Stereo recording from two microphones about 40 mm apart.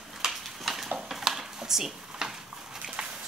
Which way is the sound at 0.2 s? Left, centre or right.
Centre.